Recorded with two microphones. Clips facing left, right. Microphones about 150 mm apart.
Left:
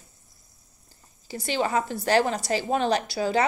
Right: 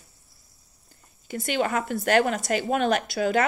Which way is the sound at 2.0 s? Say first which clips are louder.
Right 2 dB; 50° right (ahead or behind).